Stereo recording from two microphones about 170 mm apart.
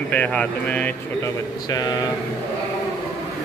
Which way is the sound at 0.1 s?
10° left (ahead or behind).